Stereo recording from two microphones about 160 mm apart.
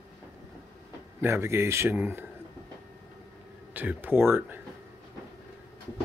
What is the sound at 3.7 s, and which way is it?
Speech, 10° right (ahead or behind).